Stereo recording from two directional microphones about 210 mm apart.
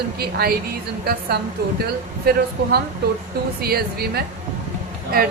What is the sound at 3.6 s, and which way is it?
Speech, 45° right (ahead or behind).